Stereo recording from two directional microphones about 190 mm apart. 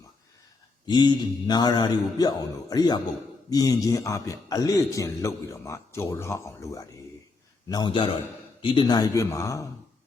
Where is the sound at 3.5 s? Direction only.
20° left (ahead or behind).